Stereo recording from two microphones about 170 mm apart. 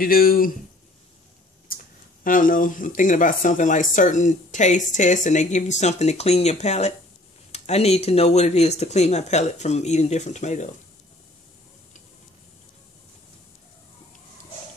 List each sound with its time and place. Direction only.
0.0 s speech: 60° left (ahead or behind)
1.7 s a sound: 60° left (ahead or behind)
2.2 s speech: 50° left (ahead or behind)